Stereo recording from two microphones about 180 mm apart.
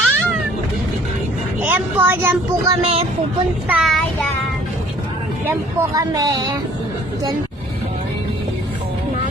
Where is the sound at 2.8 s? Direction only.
35° right (ahead or behind).